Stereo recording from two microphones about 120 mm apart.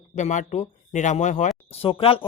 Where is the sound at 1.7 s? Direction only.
50° left (ahead or behind).